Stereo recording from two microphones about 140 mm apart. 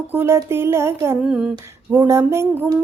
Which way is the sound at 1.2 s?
5° right (ahead or behind).